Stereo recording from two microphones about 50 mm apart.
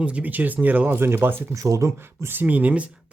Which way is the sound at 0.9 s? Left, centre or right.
Right.